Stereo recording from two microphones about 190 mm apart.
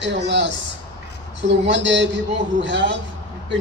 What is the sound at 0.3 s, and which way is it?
Speech, 70° right (ahead or behind).